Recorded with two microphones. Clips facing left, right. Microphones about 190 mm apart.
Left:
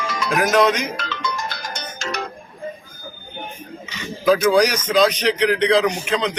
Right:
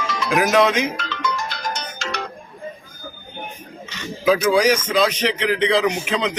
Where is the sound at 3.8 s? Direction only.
10° left (ahead or behind).